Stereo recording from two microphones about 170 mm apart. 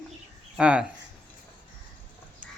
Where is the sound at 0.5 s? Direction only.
5° right (ahead or behind).